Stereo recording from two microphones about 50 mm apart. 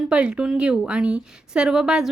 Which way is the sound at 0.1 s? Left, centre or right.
Centre.